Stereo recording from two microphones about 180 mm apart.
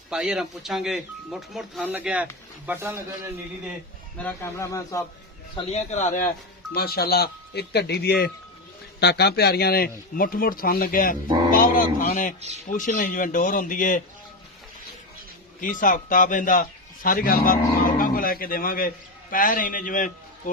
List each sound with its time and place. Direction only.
0.1 s a man's voice: 5° right (ahead or behind)
4.2 s speech: 10° left (ahead or behind)
5.5 s speech: 40° left (ahead or behind)
6.7 s a man's voice: 60° left (ahead or behind)
12.4 s speech: 40° right (ahead or behind)
12.6 s a man's voice: 45° left (ahead or behind)
15.6 s a man's voice: 50° left (ahead or behind)